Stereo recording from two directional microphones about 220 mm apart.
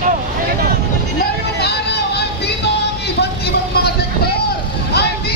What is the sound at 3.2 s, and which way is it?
Vehicle, 45° left (ahead or behind).